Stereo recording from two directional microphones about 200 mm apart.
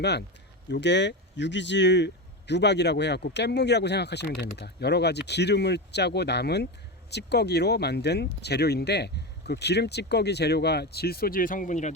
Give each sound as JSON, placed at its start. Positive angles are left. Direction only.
{"t": 0.0, "sound": "speech", "side_deg": 55}